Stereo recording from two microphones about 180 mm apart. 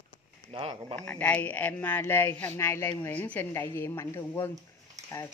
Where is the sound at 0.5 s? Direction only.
30° right (ahead or behind).